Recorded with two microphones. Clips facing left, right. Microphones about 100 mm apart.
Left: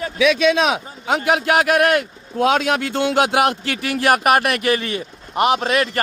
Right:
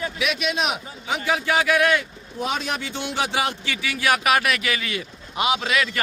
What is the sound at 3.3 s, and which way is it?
A man's voice, 60° left (ahead or behind).